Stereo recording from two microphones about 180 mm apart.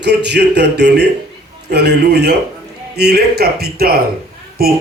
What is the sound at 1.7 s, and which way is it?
Speech, 65° right (ahead or behind).